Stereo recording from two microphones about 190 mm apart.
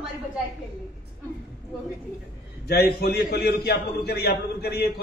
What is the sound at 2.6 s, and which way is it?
A man's voice, 55° left (ahead or behind).